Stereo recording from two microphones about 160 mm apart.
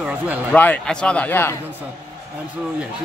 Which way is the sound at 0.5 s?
10° left (ahead or behind).